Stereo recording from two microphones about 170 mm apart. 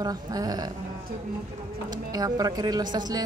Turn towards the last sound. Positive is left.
turn(degrees=-25)  # may be behind; listen again after turning